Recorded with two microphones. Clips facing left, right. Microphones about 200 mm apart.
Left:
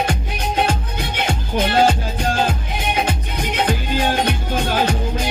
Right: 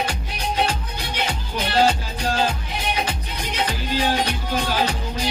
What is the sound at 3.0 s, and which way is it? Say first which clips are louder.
Music: left 5 dB; 55° left (ahead or behind).